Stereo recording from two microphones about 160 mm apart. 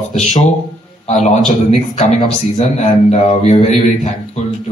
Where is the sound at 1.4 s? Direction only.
Centre (ahead or behind).